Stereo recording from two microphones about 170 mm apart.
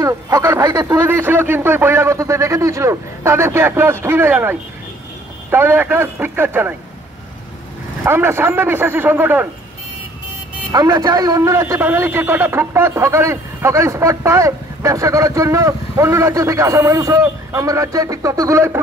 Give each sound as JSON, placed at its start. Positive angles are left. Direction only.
{"t": 0.0, "sound": "a man's voice", "side_deg": -20}
{"t": 8.0, "sound": "a man's voice", "side_deg": -15}
{"t": 10.7, "sound": "a man's voice", "side_deg": -20}